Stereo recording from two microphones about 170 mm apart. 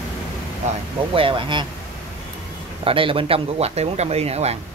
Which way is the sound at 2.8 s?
30° right (ahead or behind).